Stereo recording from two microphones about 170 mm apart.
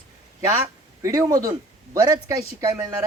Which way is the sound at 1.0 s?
20° right (ahead or behind).